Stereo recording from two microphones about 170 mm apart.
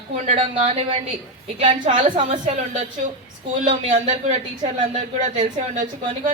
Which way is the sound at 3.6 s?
35° right (ahead or behind).